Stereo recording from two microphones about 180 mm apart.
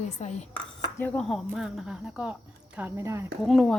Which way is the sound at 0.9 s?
10° left (ahead or behind).